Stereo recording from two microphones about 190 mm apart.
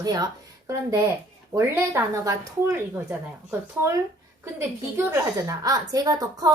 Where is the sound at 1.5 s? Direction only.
10° right (ahead or behind).